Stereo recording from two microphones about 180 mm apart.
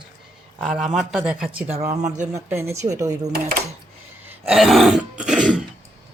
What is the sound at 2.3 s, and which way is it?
Speech, 15° right (ahead or behind).